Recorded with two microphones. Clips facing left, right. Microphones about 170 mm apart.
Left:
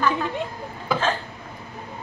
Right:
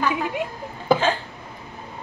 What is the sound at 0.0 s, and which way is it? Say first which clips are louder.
Speech: even; 10° right (ahead or behind).